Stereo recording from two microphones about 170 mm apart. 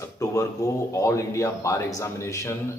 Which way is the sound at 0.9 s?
20° left (ahead or behind).